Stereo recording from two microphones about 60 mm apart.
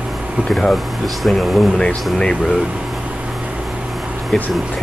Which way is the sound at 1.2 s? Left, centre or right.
Centre.